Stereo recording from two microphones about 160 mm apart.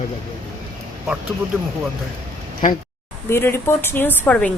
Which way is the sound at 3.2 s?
15° left (ahead or behind).